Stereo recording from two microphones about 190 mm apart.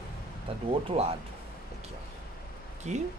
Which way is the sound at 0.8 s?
30° right (ahead or behind).